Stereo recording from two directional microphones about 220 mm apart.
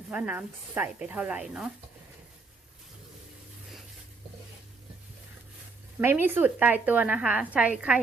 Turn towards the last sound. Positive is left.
turn(degrees=-5)  # may be behind; listen again after turning